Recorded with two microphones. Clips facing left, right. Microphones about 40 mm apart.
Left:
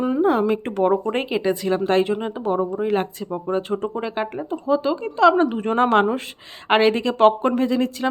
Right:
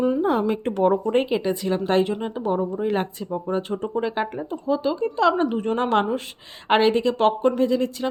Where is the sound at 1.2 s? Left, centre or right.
Centre.